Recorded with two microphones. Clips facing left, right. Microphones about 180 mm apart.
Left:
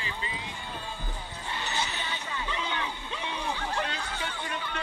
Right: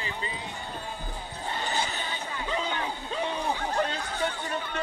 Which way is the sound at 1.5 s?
45° right (ahead or behind).